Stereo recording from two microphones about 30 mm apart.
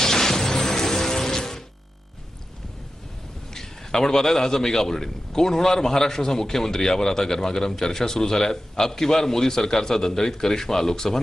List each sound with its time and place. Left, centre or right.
0.0 s music: centre
3.5 s a man's voice: centre